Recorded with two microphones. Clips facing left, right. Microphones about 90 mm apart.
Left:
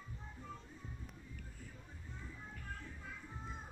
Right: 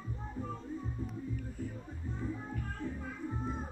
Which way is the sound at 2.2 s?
30° right (ahead or behind).